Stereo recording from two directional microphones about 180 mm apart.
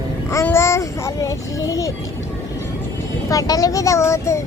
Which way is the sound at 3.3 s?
20° left (ahead or behind).